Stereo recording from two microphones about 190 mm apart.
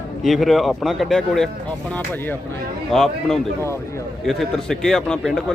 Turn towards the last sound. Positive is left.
turn(degrees=5)  # may be behind; listen again after turning